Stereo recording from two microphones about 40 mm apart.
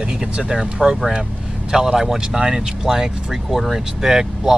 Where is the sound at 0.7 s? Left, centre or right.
Centre.